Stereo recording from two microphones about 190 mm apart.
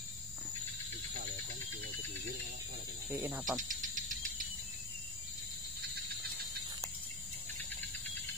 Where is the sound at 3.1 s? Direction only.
10° right (ahead or behind).